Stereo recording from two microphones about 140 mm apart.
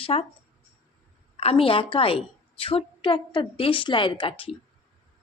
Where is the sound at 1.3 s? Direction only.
45° left (ahead or behind).